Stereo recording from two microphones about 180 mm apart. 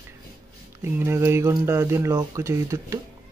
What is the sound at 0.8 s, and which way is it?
Speech, 15° right (ahead or behind).